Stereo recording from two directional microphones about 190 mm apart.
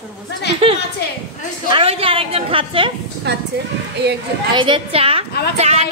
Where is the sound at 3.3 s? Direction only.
60° right (ahead or behind).